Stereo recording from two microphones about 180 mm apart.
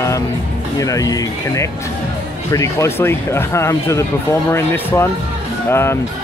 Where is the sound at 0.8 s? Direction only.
20° left (ahead or behind).